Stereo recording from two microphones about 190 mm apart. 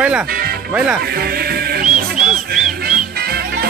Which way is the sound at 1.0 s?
55° right (ahead or behind).